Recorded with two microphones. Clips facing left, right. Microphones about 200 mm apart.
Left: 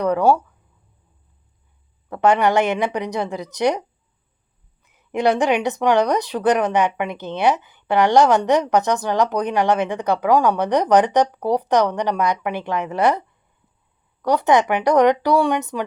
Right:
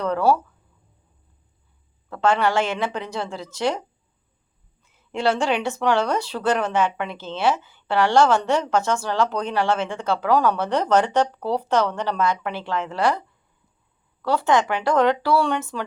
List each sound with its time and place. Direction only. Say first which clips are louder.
0.0 s speech: left 3 dB; 15° left (ahead or behind)
2.0 s speech: left 4 dB; 20° left (ahead or behind)